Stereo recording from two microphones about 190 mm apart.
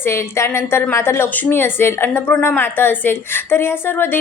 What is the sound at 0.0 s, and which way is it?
A woman's voice, 15° left (ahead or behind).